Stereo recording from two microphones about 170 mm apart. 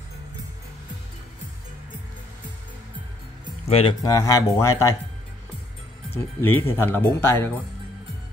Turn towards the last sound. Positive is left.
turn(degrees=15)  # may be behind; listen again after turning